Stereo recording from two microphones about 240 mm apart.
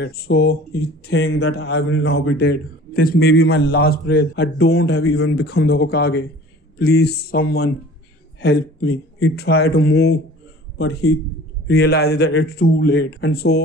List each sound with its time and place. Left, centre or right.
0.0 s a man's voice: left
5.0 s a man's voice: left
5.4 s a man's voice: left
10.8 s a man's voice: left
11.6 s a man's voice: left